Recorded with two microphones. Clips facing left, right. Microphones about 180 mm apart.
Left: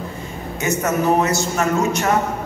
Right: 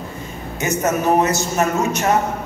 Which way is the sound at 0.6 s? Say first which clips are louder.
Even; 20° right (ahead or behind).